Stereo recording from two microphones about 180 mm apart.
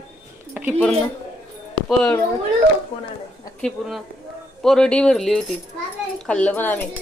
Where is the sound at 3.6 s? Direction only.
5° left (ahead or behind).